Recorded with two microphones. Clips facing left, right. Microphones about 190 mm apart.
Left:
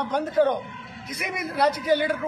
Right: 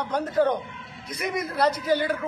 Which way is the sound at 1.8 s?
25° left (ahead or behind).